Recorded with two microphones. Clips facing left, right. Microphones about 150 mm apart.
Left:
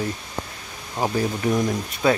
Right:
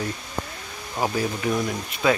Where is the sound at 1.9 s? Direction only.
35° left (ahead or behind).